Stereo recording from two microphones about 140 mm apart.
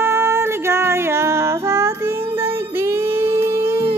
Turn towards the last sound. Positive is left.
turn(degrees=-20)  # may be behind; listen again after turning